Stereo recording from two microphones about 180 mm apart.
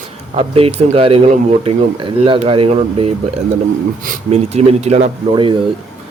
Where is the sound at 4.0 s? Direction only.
45° right (ahead or behind).